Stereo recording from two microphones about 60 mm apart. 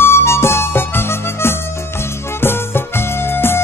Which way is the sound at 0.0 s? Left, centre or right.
Left.